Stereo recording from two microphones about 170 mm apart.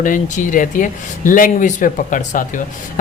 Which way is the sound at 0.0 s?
50° left (ahead or behind).